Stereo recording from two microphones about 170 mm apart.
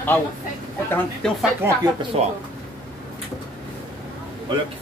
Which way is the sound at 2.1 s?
35° right (ahead or behind).